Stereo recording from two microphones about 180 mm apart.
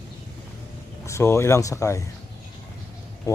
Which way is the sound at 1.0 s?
15° left (ahead or behind).